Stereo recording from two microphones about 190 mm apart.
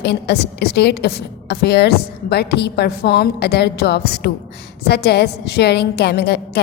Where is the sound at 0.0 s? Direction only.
60° left (ahead or behind).